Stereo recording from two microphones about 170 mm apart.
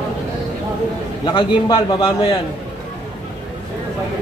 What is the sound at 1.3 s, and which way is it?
A man's voice, 25° left (ahead or behind).